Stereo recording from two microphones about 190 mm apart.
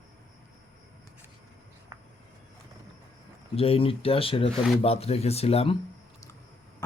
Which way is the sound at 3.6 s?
30° left (ahead or behind).